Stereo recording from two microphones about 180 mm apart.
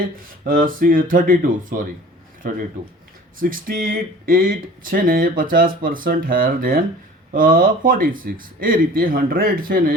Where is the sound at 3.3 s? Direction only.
50° right (ahead or behind).